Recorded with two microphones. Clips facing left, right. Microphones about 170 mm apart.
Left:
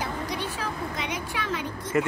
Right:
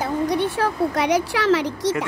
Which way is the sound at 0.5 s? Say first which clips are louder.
Right 11 dB; 70° right (ahead or behind).